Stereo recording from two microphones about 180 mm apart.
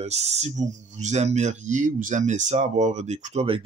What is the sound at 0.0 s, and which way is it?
Speech, 35° right (ahead or behind).